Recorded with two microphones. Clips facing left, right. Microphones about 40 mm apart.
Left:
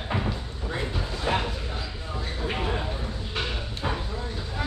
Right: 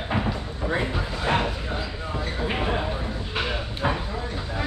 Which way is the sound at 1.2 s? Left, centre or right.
Centre.